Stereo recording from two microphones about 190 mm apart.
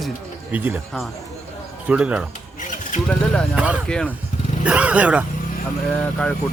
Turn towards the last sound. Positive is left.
turn(degrees=5)  # may be behind; listen again after turning